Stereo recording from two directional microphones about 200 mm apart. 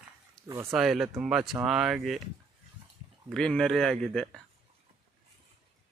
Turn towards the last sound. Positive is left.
turn(degrees=0)  # may be behind; listen again after turning